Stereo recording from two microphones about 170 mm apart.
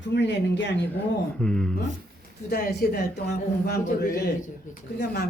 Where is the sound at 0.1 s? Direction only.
90° left.